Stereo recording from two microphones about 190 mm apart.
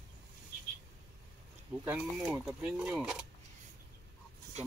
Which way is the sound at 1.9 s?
5° right (ahead or behind).